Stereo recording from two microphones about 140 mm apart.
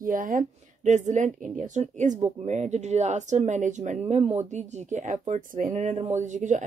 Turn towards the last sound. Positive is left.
turn(degrees=-60)  # may be behind; listen again after turning